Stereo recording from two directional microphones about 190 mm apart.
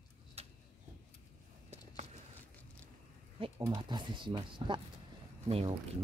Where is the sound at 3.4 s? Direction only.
30° right (ahead or behind).